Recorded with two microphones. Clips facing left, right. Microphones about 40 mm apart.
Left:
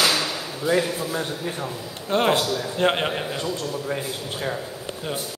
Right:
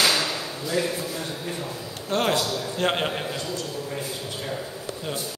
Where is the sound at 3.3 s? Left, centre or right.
Left.